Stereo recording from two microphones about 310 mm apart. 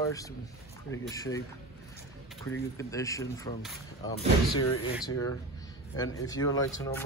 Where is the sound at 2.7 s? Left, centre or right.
Centre.